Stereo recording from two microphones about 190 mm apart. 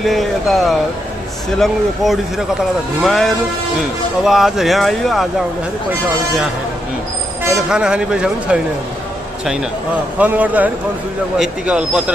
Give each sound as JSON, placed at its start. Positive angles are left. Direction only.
{"t": 0.0, "sound": "speech", "side_deg": 0}
{"t": 7.7, "sound": "speech", "side_deg": -5}
{"t": 10.1, "sound": "speech", "side_deg": -10}